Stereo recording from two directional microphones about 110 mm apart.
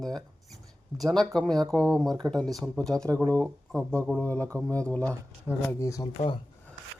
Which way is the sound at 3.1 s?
10° left (ahead or behind).